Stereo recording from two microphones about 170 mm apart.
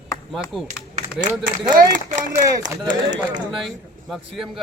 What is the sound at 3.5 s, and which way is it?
Speech, centre (ahead or behind).